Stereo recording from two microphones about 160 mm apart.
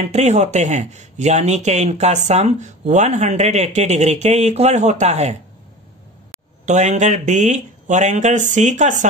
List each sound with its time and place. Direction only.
0.0 s speech: 45° right (ahead or behind)
6.6 s speech: 45° right (ahead or behind)